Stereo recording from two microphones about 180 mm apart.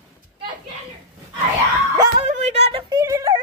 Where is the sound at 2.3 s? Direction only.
40° right (ahead or behind); by 3.3 s 15° right (ahead or behind).